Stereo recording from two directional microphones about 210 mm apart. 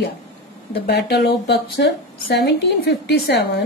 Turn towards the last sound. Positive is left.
turn(degrees=55)  # may be behind; listen again after turning